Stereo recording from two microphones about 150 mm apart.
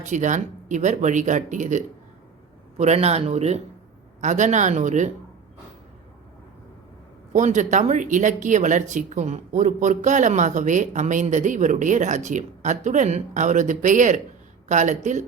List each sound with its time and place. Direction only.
0.0 s speech: 55° right (ahead or behind)
7.3 s speech: 55° right (ahead or behind)